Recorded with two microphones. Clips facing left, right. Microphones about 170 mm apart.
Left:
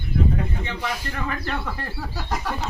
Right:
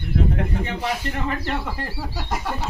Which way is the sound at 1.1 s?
15° right (ahead or behind).